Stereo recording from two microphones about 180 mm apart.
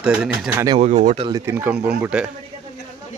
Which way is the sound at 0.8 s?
40° right (ahead or behind).